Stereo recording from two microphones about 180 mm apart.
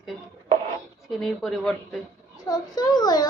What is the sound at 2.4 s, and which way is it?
Speech, 20° left (ahead or behind).